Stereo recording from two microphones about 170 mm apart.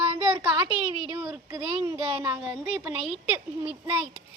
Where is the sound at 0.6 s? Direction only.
25° left (ahead or behind).